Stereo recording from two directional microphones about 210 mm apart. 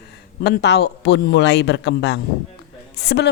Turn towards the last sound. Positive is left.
turn(degrees=50)  # may be behind; listen again after turning